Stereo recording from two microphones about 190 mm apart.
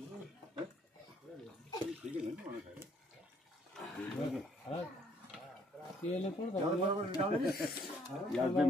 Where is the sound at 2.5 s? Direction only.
25° right (ahead or behind).